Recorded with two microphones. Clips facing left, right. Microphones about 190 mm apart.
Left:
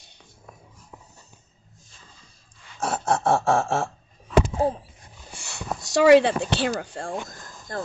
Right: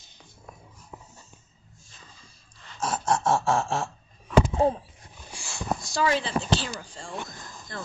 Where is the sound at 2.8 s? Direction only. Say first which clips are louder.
Left 2 dB; 60° left (ahead or behind).